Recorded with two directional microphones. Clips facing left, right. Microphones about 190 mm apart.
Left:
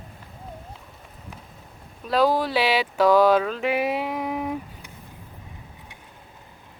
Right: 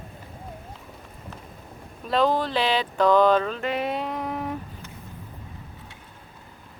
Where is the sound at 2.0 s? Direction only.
5° left (ahead or behind).